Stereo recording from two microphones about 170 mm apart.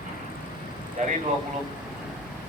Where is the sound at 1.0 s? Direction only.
45° right (ahead or behind).